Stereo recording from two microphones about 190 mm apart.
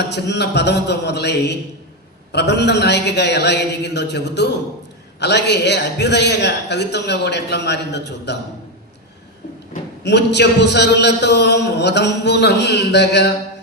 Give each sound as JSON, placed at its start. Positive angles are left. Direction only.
{"t": 0.1, "sound": "a man's voice", "side_deg": 60}
{"t": 10.0, "sound": "a man's voice", "side_deg": 65}